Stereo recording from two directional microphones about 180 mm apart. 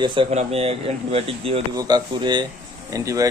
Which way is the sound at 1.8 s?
25° right (ahead or behind).